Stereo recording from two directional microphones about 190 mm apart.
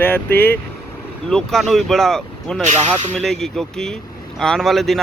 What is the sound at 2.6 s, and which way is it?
Speech, 40° right (ahead or behind).